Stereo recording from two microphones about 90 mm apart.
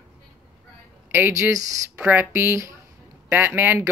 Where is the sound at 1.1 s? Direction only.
25° right (ahead or behind).